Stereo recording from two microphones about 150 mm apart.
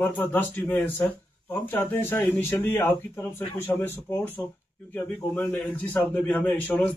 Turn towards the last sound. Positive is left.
turn(degrees=10)  # may be behind; listen again after turning